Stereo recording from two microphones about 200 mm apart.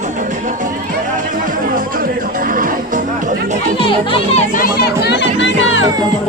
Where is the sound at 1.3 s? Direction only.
45° right (ahead or behind).